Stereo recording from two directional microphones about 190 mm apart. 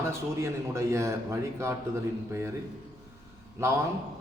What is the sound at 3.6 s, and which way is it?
Speech, 15° right (ahead or behind).